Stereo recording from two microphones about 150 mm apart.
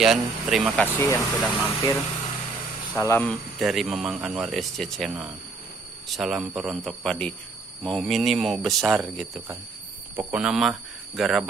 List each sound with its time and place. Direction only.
0.0 s speech: 5° right (ahead or behind)
0.7 s speech: 15° left (ahead or behind)
3.0 s speech: 15° left (ahead or behind)
3.3 s speech: centre (ahead or behind)